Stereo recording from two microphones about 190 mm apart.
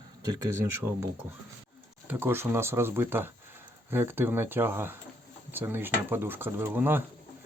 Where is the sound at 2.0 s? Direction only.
10° right (ahead or behind).